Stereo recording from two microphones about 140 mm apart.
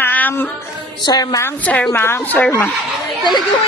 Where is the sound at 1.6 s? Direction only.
10° left (ahead or behind).